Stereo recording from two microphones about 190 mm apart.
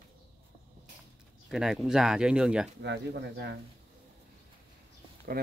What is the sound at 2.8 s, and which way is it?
Speech, 65° right (ahead or behind).